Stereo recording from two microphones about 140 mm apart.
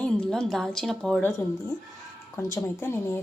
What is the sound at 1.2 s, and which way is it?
A woman's voice, 20° left (ahead or behind).